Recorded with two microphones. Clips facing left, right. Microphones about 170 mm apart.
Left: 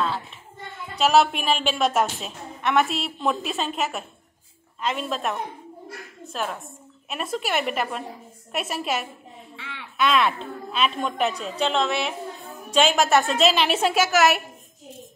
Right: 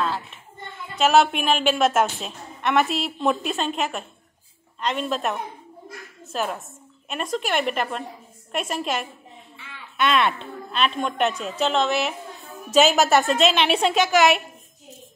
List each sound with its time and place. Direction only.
0.9 s a woman's voice: centre (ahead or behind)
9.6 s a sound: 75° left (ahead or behind)
9.9 s a child's voice: centre (ahead or behind)